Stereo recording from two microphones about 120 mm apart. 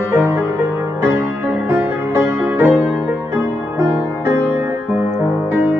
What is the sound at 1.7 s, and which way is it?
Music, 20° right (ahead or behind).